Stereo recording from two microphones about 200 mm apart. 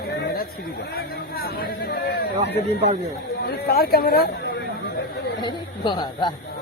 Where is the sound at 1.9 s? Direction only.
55° left (ahead or behind).